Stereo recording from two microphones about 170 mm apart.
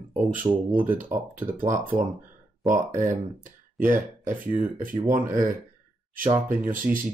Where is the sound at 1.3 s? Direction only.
50° right (ahead or behind).